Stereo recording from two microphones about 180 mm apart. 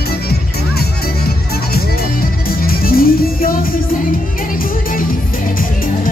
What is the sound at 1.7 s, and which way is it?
Music, 55° left (ahead or behind).